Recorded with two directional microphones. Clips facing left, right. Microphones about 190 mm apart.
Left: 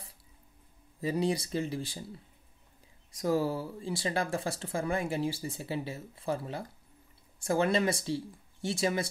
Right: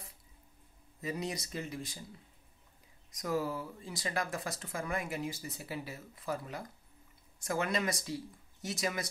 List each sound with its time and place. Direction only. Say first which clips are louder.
1.0 s speech: left 8 dB; 30° left (ahead or behind)
3.1 s speech: left 5 dB; 30° left (ahead or behind)